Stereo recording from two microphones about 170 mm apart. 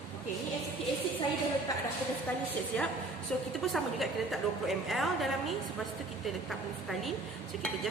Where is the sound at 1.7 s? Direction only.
20° left (ahead or behind).